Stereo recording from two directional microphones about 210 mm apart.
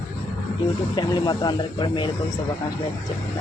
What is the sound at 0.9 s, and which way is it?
Speech, 20° left (ahead or behind).